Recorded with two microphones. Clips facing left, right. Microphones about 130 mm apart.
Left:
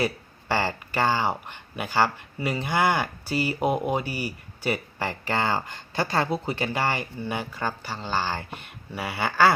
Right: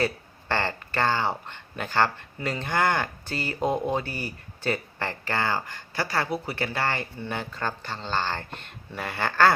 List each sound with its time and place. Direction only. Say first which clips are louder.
0.0 s speech: even; 10° left (ahead or behind)